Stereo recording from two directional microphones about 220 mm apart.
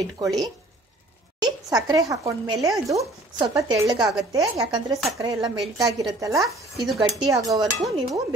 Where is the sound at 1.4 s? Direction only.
15° right (ahead or behind).